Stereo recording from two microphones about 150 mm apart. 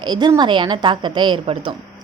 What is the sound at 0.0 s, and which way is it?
A woman's voice, 30° right (ahead or behind).